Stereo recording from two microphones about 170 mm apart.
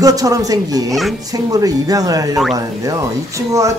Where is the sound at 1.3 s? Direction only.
20° right (ahead or behind).